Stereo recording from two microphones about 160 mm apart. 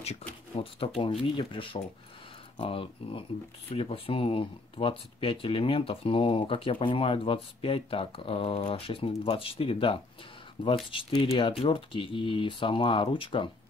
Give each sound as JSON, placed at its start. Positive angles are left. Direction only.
{"t": 0.6, "sound": "speech", "side_deg": 35}